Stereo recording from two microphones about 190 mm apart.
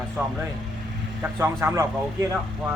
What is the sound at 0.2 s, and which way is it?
Speech, 10° right (ahead or behind).